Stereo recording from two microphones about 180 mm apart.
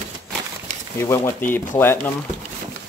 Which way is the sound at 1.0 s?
15° left (ahead or behind).